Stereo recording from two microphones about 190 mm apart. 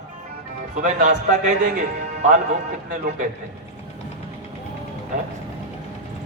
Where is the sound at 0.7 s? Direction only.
40° right (ahead or behind).